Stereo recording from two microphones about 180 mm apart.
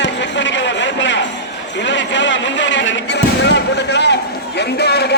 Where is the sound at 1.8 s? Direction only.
85° left.